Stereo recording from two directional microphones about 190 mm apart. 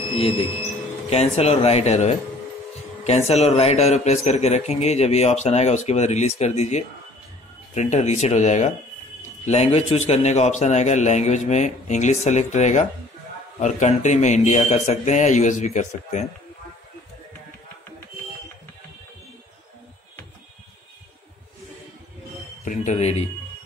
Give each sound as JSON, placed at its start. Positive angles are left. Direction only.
{"t": 0.2, "sound": "a man's voice", "side_deg": 30}
{"t": 22.7, "sound": "a man's voice", "side_deg": 35}